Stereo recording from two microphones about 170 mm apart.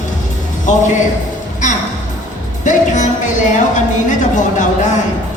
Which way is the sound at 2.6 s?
45° left (ahead or behind).